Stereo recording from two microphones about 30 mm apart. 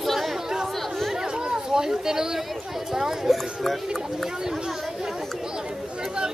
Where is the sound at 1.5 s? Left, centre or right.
Right.